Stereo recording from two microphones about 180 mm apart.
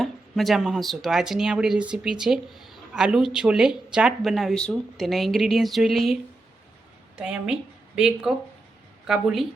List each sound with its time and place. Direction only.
0.0 s speech: centre (ahead or behind)
7.2 s a woman's voice: 5° right (ahead or behind)